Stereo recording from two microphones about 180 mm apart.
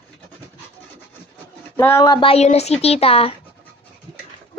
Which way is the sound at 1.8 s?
15° left (ahead or behind).